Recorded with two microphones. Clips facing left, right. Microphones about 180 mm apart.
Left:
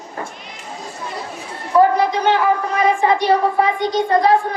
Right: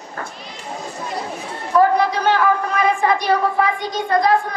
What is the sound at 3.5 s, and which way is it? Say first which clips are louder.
A woman's voice: left 3 dB; 30° left (ahead or behind).